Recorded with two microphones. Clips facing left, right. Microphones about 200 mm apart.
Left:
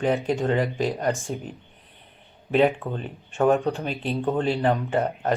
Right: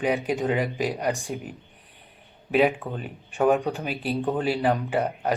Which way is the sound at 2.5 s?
5° right (ahead or behind).